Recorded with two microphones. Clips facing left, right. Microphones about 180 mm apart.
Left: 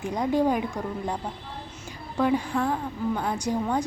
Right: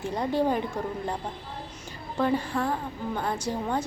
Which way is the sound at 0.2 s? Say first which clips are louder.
Left 2 dB; 10° left (ahead or behind).